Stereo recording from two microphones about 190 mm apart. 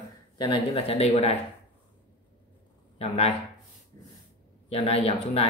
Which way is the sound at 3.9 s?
20° left (ahead or behind).